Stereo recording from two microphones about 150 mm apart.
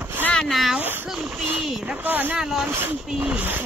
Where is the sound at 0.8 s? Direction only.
15° right (ahead or behind).